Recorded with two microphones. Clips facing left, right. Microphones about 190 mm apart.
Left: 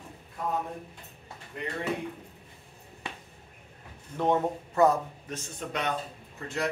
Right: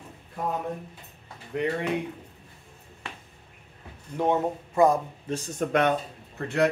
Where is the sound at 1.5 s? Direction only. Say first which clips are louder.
Right 10 dB; 80° right.